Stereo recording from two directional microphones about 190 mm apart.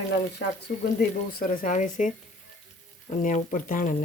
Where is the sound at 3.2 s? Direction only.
40° left (ahead or behind).